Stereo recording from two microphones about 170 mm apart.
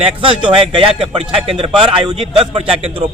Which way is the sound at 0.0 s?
30° right (ahead or behind).